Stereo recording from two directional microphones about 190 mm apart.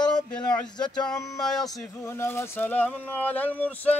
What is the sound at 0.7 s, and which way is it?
Speech, 20° left (ahead or behind).